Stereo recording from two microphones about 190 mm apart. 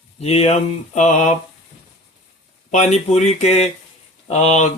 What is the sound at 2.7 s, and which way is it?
Speech, 35° left (ahead or behind).